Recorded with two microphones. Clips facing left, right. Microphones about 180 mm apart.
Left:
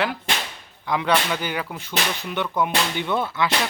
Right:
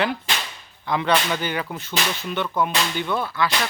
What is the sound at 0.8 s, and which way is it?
Whip, 10° left (ahead or behind).